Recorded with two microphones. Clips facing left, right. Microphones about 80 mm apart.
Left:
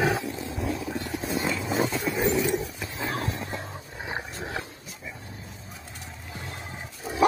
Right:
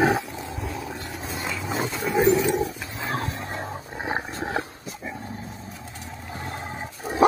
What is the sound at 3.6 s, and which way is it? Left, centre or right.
Dog, right.